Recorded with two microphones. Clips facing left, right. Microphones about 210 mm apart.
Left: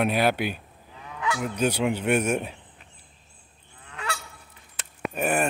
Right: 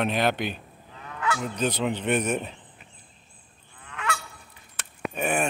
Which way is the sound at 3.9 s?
30° left (ahead or behind).